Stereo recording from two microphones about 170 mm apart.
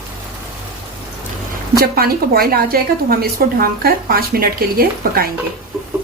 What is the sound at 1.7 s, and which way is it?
A woman's voice, 60° right (ahead or behind).